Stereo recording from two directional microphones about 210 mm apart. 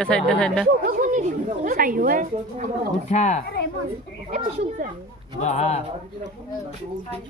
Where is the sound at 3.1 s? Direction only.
35° left (ahead or behind).